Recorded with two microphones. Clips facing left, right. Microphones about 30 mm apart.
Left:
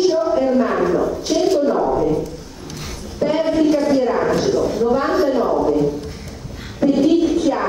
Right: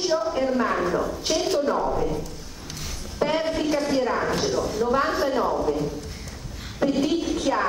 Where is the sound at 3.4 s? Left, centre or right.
Centre.